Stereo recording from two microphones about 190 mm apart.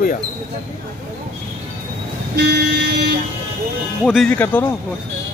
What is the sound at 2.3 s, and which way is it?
Vehicle, 60° right (ahead or behind).